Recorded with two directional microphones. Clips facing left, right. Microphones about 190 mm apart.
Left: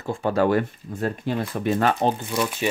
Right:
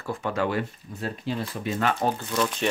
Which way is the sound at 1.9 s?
15° left (ahead or behind).